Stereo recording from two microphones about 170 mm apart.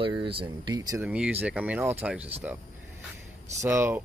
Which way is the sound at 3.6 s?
15° right (ahead or behind).